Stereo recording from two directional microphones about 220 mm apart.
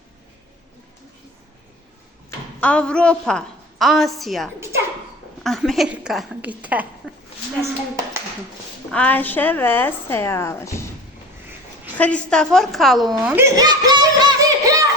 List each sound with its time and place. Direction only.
2.6 s a woman's voice: 5° left (ahead or behind)
8.9 s a woman's voice: 5° left (ahead or behind)
11.9 s a woman's voice: 5° left (ahead or behind)
13.1 s snicker: 5° right (ahead or behind)